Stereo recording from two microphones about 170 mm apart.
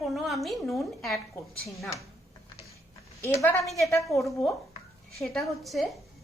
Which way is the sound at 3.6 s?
Centre (ahead or behind).